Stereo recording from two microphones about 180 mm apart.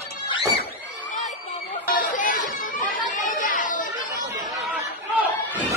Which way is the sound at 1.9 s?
50° left (ahead or behind).